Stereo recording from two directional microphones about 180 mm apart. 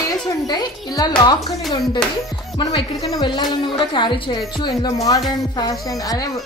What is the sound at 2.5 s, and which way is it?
Speech, 30° left (ahead or behind).